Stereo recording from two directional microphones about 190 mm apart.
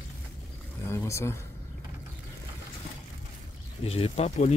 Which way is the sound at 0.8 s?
15° left (ahead or behind).